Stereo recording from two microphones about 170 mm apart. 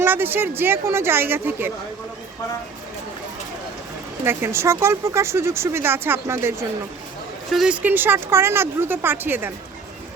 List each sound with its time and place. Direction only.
0.0 s speech: 10° right (ahead or behind)
4.2 s speech: 15° right (ahead or behind)
7.5 s speech: 5° right (ahead or behind)